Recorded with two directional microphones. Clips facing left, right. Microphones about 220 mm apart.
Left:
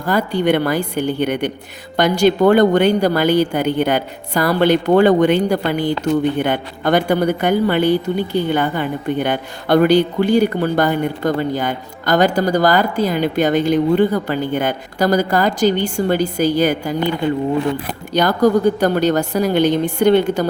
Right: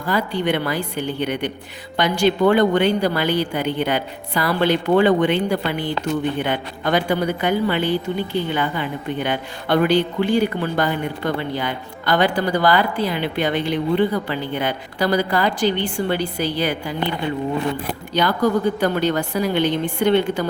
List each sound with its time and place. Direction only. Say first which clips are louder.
0.0 s a man's voice: left 4 dB; 45° left (ahead or behind)
18.1 s a woman's voice: left 5 dB; 40° left (ahead or behind)